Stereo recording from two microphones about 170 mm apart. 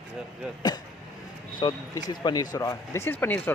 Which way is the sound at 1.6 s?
30° left (ahead or behind).